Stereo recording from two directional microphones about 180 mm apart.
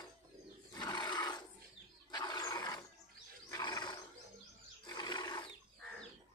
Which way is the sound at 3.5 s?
20° left (ahead or behind).